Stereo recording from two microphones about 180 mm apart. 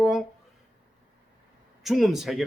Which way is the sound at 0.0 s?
Centre (ahead or behind).